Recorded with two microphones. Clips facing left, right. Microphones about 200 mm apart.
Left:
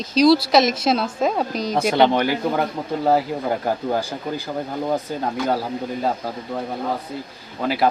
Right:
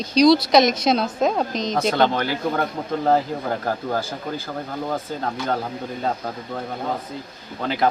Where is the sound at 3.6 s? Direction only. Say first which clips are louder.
Left 2 dB; 15° left (ahead or behind).